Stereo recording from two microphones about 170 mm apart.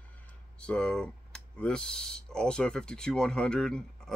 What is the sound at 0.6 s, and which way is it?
Speech, 5° left (ahead or behind).